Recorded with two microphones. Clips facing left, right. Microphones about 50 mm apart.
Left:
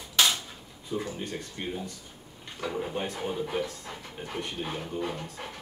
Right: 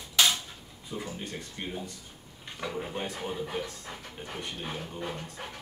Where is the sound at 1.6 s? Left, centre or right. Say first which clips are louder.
Left 3 dB; centre.